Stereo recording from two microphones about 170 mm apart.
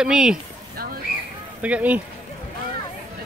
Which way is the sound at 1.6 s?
10° right (ahead or behind).